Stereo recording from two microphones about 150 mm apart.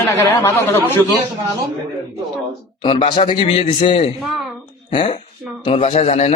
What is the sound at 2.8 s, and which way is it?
A man's voice, 35° left (ahead or behind).